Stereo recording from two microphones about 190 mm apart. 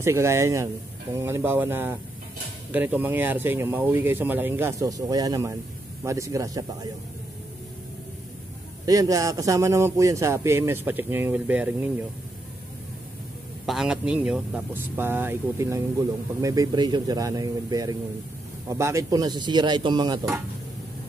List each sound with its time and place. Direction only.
0.0 s speech: 15° right (ahead or behind)
8.8 s speech: 20° right (ahead or behind)
13.7 s speech: 5° right (ahead or behind); by 20.2 s 25° right (ahead or behind)